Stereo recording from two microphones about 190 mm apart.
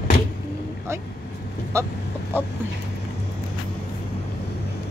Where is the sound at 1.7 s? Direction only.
15° right (ahead or behind).